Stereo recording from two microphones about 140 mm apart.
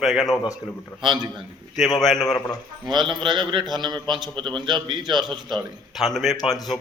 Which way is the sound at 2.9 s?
35° right (ahead or behind).